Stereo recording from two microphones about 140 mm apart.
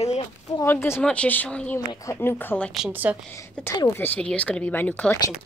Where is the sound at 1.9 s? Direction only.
20° left (ahead or behind).